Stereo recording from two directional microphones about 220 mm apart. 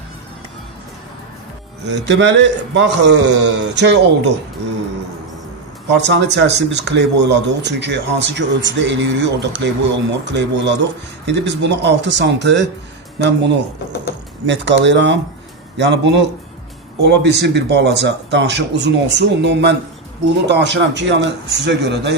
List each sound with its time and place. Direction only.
1.9 s speech: 55° right (ahead or behind)
6.0 s speech: 50° right (ahead or behind)